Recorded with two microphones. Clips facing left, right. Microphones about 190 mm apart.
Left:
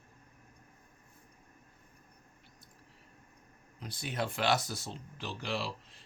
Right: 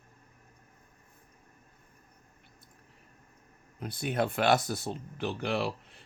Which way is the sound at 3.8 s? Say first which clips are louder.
Right 6 dB; 55° right (ahead or behind).